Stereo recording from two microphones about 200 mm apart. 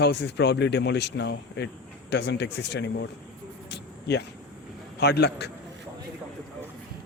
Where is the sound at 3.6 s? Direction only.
55° left (ahead or behind).